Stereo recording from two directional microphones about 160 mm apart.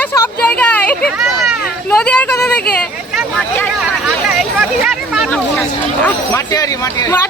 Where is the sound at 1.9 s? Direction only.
10° left (ahead or behind).